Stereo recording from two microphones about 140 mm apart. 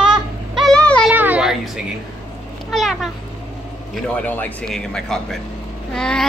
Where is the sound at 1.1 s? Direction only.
10° right (ahead or behind).